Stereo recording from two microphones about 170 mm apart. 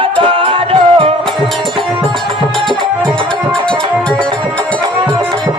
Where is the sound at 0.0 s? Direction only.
30° right (ahead or behind).